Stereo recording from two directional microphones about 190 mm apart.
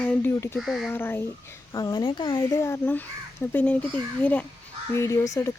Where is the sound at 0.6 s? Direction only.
Centre (ahead or behind).